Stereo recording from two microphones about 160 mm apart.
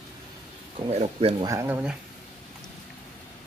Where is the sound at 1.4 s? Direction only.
20° right (ahead or behind).